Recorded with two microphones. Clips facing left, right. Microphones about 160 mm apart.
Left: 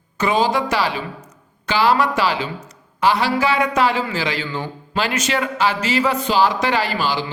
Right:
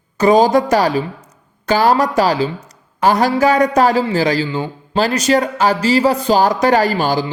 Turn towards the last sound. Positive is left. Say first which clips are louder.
# right 6 dB
turn(degrees=-45)  # may be behind; listen again after turning